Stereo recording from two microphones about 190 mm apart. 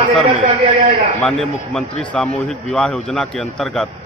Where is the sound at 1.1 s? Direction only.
5° left (ahead or behind).